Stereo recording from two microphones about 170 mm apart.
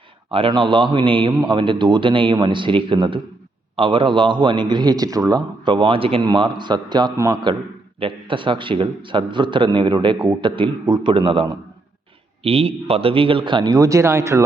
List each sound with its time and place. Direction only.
0.3 s a man's voice: 30° right (ahead or behind)